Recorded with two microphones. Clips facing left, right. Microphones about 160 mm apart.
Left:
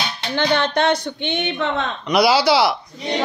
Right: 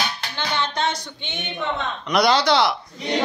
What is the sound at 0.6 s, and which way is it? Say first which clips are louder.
Speech: left 6 dB; 60° left (ahead or behind).